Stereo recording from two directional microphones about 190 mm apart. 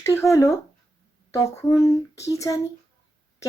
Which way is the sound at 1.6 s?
20° left (ahead or behind).